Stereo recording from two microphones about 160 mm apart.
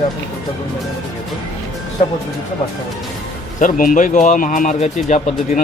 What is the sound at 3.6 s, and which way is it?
Speech, 60° left (ahead or behind).